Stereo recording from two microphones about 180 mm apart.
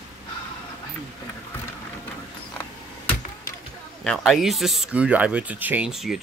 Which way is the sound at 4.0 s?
Centre (ahead or behind).